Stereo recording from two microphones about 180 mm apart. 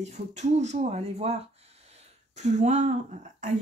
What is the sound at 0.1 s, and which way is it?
Speech, 40° right (ahead or behind).